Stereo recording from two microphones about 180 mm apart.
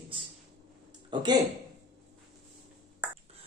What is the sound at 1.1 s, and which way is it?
Speech, 25° right (ahead or behind).